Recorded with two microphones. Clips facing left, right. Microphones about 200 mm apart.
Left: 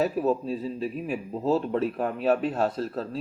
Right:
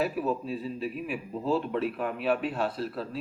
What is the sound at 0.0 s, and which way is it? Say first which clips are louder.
A man's voice: left 4 dB; 40° left (ahead or behind).